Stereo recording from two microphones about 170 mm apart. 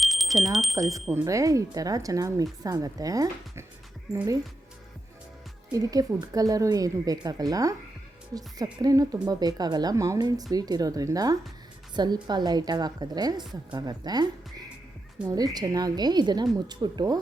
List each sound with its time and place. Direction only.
0.0 s a sound: centre (ahead or behind)
0.9 s a woman's voice: centre (ahead or behind)
1.1 s speech: 20° right (ahead or behind)
5.7 s speech: 20° right (ahead or behind)
13.4 s a woman's voice: centre (ahead or behind)
13.7 s speech: 25° right (ahead or behind)
15.2 s a woman's voice: 5° right (ahead or behind)
15.5 s speech: 20° right (ahead or behind)